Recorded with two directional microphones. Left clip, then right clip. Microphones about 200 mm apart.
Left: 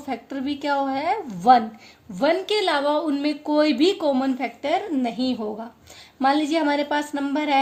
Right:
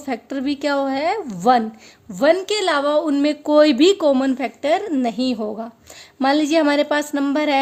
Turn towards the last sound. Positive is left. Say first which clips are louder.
# right 4 dB
turn(degrees=-50)  # may be behind; listen again after turning